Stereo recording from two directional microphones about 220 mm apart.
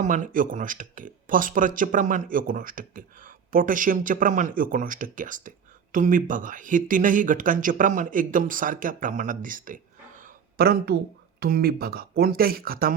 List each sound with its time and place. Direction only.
0.0 s speech: 35° right (ahead or behind)